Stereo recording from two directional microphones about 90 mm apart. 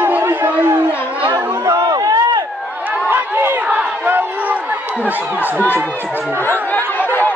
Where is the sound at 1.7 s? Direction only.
40° right (ahead or behind).